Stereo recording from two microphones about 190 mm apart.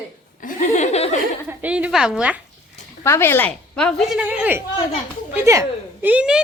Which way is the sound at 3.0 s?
15° left (ahead or behind).